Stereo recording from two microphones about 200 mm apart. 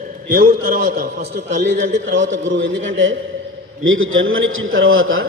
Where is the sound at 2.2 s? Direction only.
70° right (ahead or behind).